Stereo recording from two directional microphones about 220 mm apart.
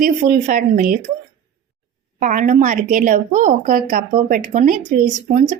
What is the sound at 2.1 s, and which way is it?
Speech, 35° right (ahead or behind).